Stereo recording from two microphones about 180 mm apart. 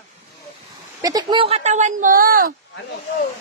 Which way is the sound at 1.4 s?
35° right (ahead or behind).